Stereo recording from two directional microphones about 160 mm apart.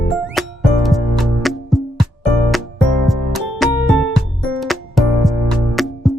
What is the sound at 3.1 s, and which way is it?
Music, centre (ahead or behind).